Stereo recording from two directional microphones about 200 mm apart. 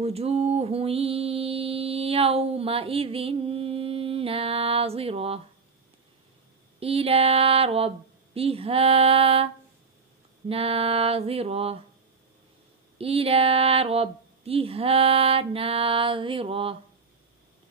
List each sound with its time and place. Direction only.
0.0 s mantra: 30° right (ahead or behind)
6.8 s mantra: 30° right (ahead or behind)
10.5 s mantra: 30° right (ahead or behind)
12.9 s mantra: 30° right (ahead or behind)